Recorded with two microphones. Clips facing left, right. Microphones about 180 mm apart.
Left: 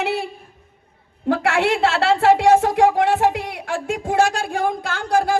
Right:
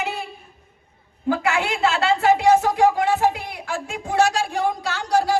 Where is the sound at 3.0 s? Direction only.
75° left (ahead or behind).